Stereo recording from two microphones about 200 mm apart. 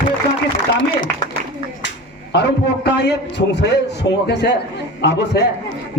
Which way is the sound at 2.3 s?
60° left (ahead or behind).